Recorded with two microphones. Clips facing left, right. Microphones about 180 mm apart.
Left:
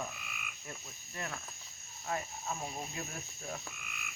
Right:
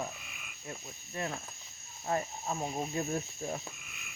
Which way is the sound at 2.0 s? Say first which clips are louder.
Right 5 dB; 35° right (ahead or behind).